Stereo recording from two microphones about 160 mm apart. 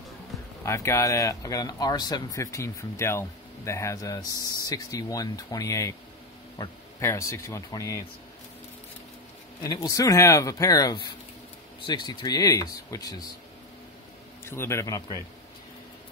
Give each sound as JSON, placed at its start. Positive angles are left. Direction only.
{"t": 0.7, "sound": "speech", "side_deg": 15}
{"t": 9.6, "sound": "speech", "side_deg": 20}
{"t": 14.4, "sound": "a man's voice", "side_deg": 15}